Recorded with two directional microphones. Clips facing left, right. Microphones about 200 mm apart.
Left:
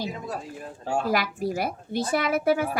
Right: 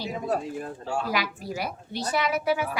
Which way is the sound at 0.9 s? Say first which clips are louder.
Left 4 dB; 50° left (ahead or behind).